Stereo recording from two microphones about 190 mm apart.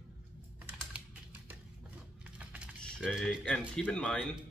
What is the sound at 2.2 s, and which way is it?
Typing, 5° right (ahead or behind).